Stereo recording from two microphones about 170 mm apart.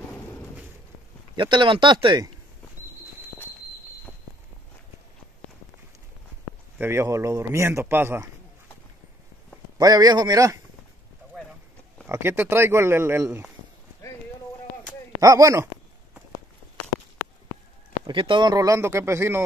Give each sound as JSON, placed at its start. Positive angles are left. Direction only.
{"t": 1.3, "sound": "speech", "side_deg": -30}
{"t": 6.8, "sound": "speech", "side_deg": -15}
{"t": 9.8, "sound": "speech", "side_deg": -20}
{"t": 12.1, "sound": "speech", "side_deg": -15}
{"t": 15.1, "sound": "speech", "side_deg": -20}
{"t": 18.0, "sound": "speech", "side_deg": -30}